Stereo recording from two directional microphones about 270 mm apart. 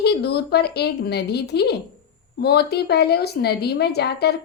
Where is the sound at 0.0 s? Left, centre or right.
Left.